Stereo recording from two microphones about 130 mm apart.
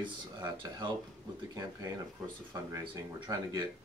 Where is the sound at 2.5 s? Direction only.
25° right (ahead or behind).